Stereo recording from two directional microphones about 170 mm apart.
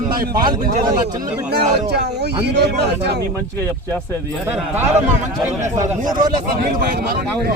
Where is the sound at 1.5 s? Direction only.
75° right (ahead or behind).